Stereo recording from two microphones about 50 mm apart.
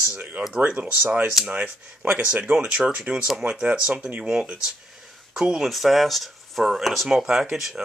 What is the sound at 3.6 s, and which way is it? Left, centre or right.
Speech, right.